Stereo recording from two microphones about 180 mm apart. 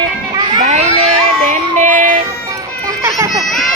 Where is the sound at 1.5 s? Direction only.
45° right (ahead or behind).